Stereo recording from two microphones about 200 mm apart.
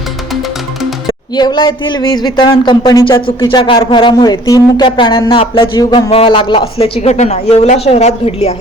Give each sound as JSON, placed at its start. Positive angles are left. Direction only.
{"t": 1.4, "sound": "speech", "side_deg": 20}